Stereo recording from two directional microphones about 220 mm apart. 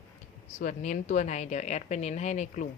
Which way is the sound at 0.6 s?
35° left (ahead or behind).